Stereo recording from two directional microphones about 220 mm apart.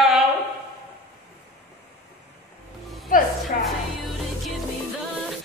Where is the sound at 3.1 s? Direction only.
40° left (ahead or behind).